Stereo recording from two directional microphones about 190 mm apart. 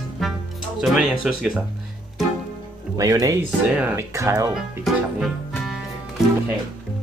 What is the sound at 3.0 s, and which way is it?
Speech, 20° right (ahead or behind).